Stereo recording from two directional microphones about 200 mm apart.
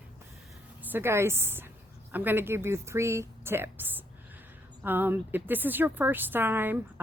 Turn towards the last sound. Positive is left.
turn(degrees=-10)  # may be behind; listen again after turning